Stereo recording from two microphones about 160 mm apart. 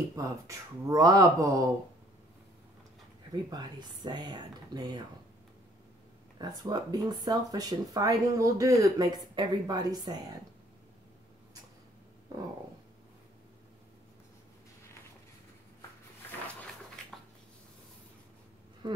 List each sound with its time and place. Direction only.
0.1 s speech: 20° right (ahead or behind)
3.4 s speech: 25° right (ahead or behind)
6.3 s speech: 25° right (ahead or behind)
18.8 s a sound: 30° right (ahead or behind)